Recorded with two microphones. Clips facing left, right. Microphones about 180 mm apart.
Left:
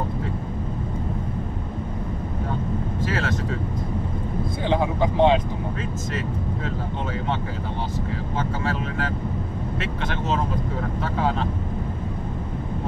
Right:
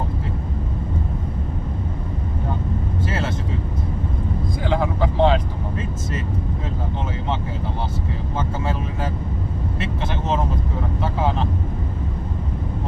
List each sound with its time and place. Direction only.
4.6 s vehicle: 20° left (ahead or behind)